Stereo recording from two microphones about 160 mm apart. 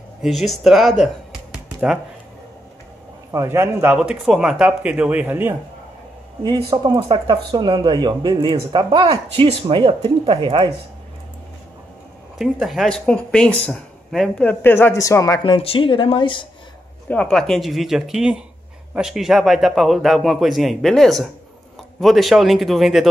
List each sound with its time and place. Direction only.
0.2 s a man's voice: centre (ahead or behind)
3.3 s speech: 15° right (ahead or behind)
6.7 s speech: 25° right (ahead or behind)
12.4 s speech: centre (ahead or behind); by 16.4 s 30° left (ahead or behind)
17.1 s a man's voice: 5° left (ahead or behind)